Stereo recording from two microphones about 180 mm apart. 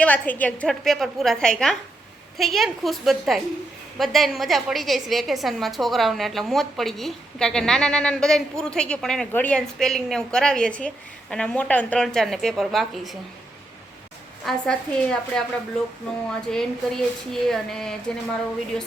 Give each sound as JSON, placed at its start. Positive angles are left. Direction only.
{"t": 0.0, "sound": "a woman's voice", "side_deg": 10}
{"t": 14.4, "sound": "a woman's voice", "side_deg": 5}
{"t": 16.5, "sound": "a woman's voice", "side_deg": 5}